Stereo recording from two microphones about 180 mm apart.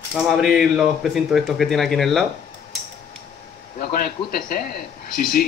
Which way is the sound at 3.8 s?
55° left (ahead or behind).